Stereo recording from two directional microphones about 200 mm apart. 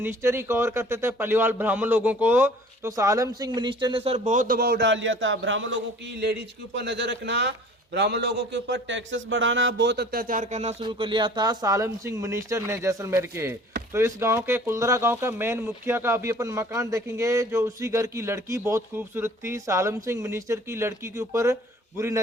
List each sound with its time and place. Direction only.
0.0 s speech: 10° right (ahead or behind)